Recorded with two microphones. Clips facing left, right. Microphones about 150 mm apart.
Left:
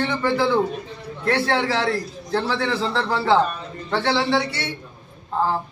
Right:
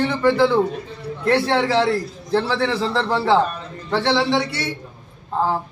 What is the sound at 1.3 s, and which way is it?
A man's voice, 15° right (ahead or behind).